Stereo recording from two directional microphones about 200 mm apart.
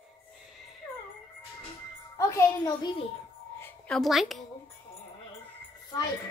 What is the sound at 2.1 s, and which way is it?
A child's voice, 15° left (ahead or behind).